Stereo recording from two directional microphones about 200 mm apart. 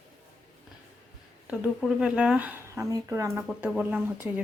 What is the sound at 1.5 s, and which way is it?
Speech, 5° right (ahead or behind).